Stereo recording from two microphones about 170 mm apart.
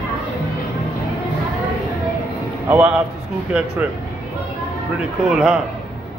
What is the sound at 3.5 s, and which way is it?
Speech, 5° right (ahead or behind).